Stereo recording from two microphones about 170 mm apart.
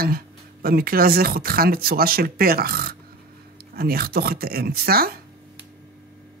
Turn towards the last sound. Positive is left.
turn(degrees=-65)  # may be behind; listen again after turning